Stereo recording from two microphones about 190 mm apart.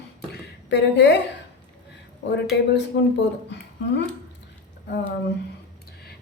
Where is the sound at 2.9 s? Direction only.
70° left (ahead or behind).